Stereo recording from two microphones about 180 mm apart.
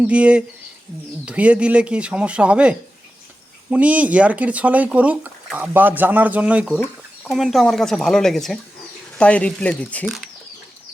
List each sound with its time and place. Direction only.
0.0 s speech: 5° right (ahead or behind)